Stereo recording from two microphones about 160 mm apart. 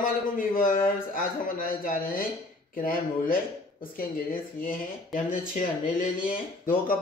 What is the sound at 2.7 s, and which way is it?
Speech, 60° left (ahead or behind).